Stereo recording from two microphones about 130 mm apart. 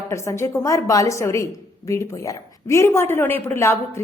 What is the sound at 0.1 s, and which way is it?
A woman's voice, 25° left (ahead or behind).